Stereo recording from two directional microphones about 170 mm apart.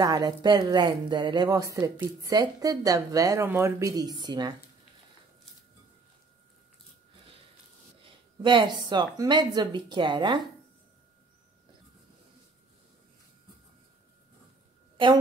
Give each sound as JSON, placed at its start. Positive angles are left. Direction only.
{"t": 0.0, "sound": "speech", "side_deg": -25}
{"t": 8.0, "sound": "speech", "side_deg": -30}